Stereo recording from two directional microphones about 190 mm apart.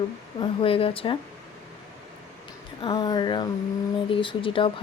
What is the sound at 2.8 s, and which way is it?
Speech, 20° left (ahead or behind).